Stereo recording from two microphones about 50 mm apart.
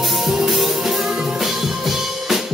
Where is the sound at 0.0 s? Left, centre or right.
Centre.